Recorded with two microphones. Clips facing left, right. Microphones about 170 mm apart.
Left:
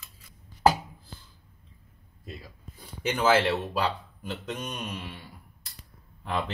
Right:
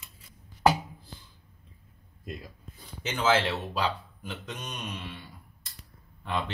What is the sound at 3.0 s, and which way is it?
Speech, 10° left (ahead or behind).